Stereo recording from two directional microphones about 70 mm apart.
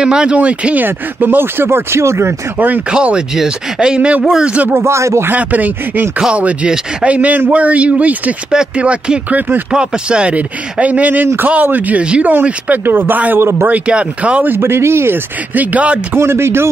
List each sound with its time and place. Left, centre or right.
0.0 s speech: centre
0.8 s speech: right
2.9 s speech: centre
4.7 s speech: right
5.3 s speech: right
13.7 s speech: centre
14.5 s speech: right
15.5 s speech: right
16.2 s speech: right